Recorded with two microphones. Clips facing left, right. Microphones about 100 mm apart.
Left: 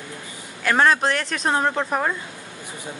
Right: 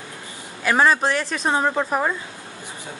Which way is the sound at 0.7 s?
5° right (ahead or behind).